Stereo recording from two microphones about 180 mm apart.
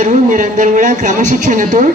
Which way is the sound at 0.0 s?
45° right (ahead or behind).